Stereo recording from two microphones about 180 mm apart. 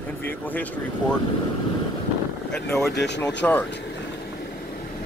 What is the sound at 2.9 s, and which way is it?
Speech, 70° left (ahead or behind).